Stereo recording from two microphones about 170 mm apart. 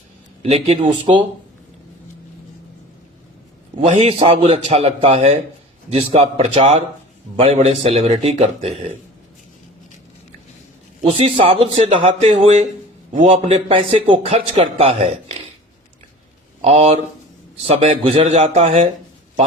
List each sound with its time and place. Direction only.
0.5 s a man's voice: 35° right (ahead or behind)
3.8 s a man's voice: 40° right (ahead or behind)
11.0 s a man's voice: 30° right (ahead or behind)
16.6 s a man's voice: 35° right (ahead or behind)